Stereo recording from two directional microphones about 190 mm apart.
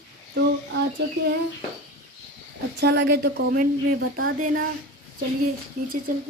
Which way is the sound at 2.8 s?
60° right (ahead or behind).